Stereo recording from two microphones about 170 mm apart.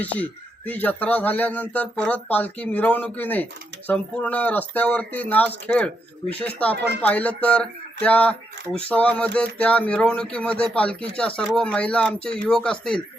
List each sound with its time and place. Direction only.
0.0 s speech: 10° left (ahead or behind)
7.0 s speech: 10° left (ahead or behind)